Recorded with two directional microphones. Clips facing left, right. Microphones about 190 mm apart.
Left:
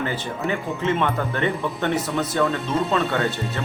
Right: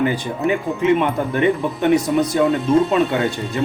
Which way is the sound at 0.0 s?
15° right (ahead or behind).